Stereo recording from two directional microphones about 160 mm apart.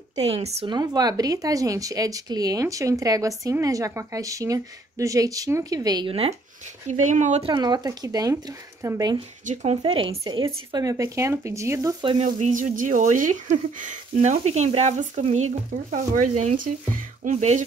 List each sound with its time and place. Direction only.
0.1 s speech: 40° right (ahead or behind)
0.7 s speech: 25° right (ahead or behind)
6.9 s speech: 50° right (ahead or behind)
7.4 s speech: 30° right (ahead or behind)
9.5 s speech: 45° right (ahead or behind)
9.8 s speech: 35° right (ahead or behind)
12.0 s speech: 30° right (ahead or behind)
12.3 s speech: 50° right (ahead or behind)